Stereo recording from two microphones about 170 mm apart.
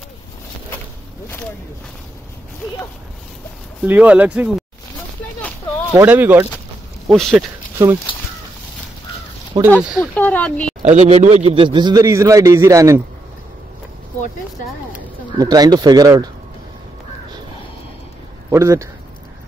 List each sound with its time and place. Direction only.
3.8 s speech: 10° right (ahead or behind)
5.9 s speech: 10° right (ahead or behind)
7.1 s speech: centre (ahead or behind)
7.7 s speech: 15° right (ahead or behind)
9.8 s speech: 5° right (ahead or behind)
10.1 s speech: 10° left (ahead or behind)
10.8 s a man's voice: 40° right (ahead or behind); by 13.0 s 20° right (ahead or behind)
15.3 s a man's voice: 20° right (ahead or behind)
18.5 s speech: 15° right (ahead or behind)